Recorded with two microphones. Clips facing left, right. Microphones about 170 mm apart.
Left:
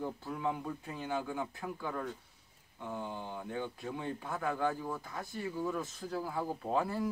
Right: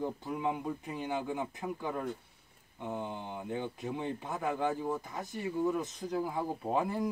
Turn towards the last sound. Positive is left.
turn(degrees=-15)  # may be behind; listen again after turning